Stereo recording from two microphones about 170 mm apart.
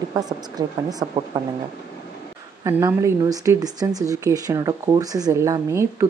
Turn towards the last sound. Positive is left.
turn(degrees=-15)  # may be behind; listen again after turning